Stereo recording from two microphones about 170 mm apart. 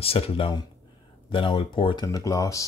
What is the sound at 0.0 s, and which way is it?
Speech, 35° left (ahead or behind).